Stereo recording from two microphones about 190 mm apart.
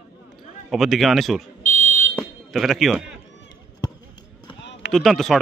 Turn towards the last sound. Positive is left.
turn(degrees=0)  # may be behind; listen again after turning